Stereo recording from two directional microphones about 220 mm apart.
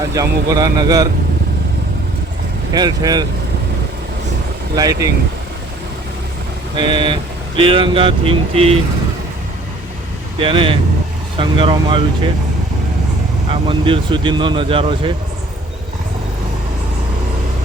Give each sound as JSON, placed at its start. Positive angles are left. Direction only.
{"t": 0.0, "sound": "speech", "side_deg": -15}
{"t": 2.7, "sound": "speech", "side_deg": -20}
{"t": 4.7, "sound": "speech", "side_deg": -15}
{"t": 6.7, "sound": "speech", "side_deg": -20}
{"t": 10.4, "sound": "speech", "side_deg": -25}
{"t": 13.5, "sound": "speech", "side_deg": -25}